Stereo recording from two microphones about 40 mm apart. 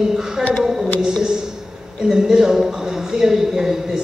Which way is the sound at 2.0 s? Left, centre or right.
Centre.